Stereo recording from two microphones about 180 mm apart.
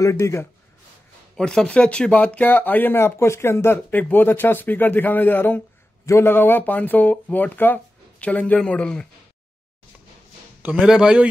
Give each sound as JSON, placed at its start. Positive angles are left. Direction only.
{"t": 0.0, "sound": "speech", "side_deg": 15}
{"t": 1.3, "sound": "speech", "side_deg": 5}
{"t": 10.6, "sound": "speech", "side_deg": -5}